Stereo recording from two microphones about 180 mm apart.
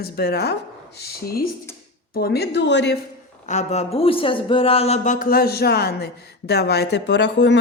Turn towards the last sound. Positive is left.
turn(degrees=75)  # may be behind; listen again after turning